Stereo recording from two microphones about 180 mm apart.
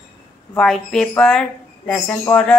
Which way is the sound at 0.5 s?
Centre (ahead or behind).